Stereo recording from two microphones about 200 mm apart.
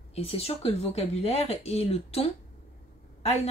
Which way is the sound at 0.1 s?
30° left (ahead or behind).